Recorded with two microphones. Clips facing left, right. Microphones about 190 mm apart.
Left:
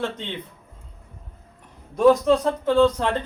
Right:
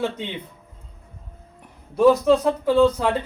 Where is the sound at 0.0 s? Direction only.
5° right (ahead or behind).